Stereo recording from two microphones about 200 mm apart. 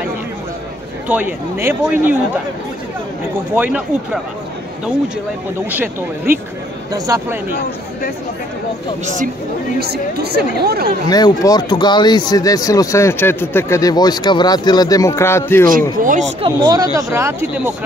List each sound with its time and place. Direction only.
1.0 s speech: 10° right (ahead or behind)
3.5 s speech: 5° right (ahead or behind)
6.9 s speech: 15° right (ahead or behind)
9.0 s speech: 40° right (ahead or behind)
9.8 s speech: 55° right (ahead or behind)
11.1 s a man's voice: 20° left (ahead or behind)
16.0 s speech: 40° right (ahead or behind); by 17.7 s 10° right (ahead or behind)